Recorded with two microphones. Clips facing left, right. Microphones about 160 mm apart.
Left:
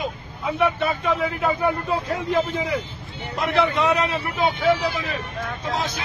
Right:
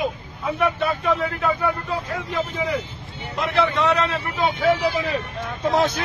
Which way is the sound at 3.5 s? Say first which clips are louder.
Even; 10° left (ahead or behind).